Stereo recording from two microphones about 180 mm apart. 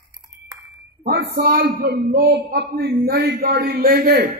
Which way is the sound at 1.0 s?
60° right (ahead or behind).